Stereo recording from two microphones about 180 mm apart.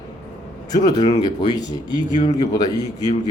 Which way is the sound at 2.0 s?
45° left (ahead or behind).